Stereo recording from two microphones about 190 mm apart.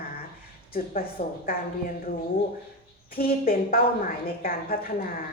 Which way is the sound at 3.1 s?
50° left (ahead or behind).